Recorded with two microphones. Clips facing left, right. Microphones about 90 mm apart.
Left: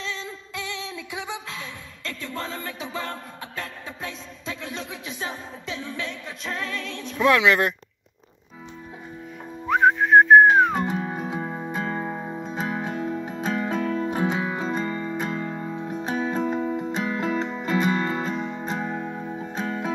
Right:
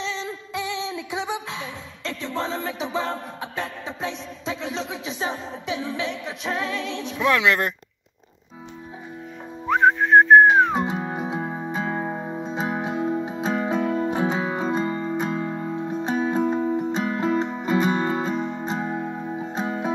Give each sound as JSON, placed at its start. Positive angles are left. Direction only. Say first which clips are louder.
{"t": 0.0, "sound": "music", "louder": "right 4 dB", "side_deg": -20}
{"t": 7.2, "sound": "speech", "louder": "left 2 dB", "side_deg": 0}
{"t": 9.7, "sound": "whistling", "louder": "right 1 dB", "side_deg": 0}
{"t": 10.6, "sound": "music", "louder": "right 1 dB", "side_deg": -10}
{"t": 15.9, "sound": "music", "louder": "right 3 dB", "side_deg": -25}